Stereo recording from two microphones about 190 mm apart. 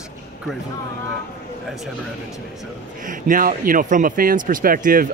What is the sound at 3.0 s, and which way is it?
Speech, 45° right (ahead or behind).